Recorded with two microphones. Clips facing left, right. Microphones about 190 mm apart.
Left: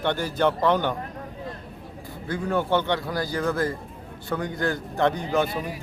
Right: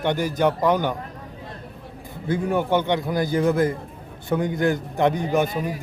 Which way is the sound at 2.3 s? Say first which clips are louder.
Right 3 dB; 15° right (ahead or behind).